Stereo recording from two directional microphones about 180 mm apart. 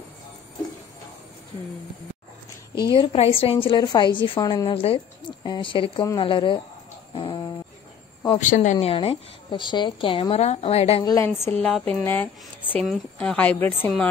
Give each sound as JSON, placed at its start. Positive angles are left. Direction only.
{"t": 2.8, "sound": "a woman's voice", "side_deg": 30}
{"t": 7.2, "sound": "a sound", "side_deg": 25}
{"t": 8.4, "sound": "a woman's voice", "side_deg": 45}
{"t": 8.7, "sound": "a woman's voice", "side_deg": 30}
{"t": 11.2, "sound": "a woman's voice", "side_deg": 15}